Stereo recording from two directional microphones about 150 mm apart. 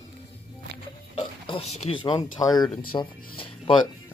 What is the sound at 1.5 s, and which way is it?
Speech, 40° left (ahead or behind).